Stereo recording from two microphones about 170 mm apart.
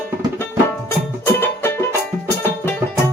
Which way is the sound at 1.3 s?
15° left (ahead or behind).